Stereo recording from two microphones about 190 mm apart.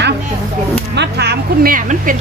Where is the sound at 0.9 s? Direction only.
55° right (ahead or behind).